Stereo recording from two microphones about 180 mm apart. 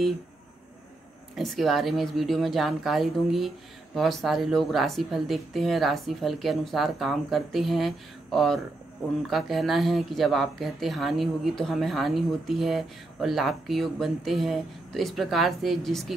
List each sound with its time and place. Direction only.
1.3 s a woman's voice: centre (ahead or behind)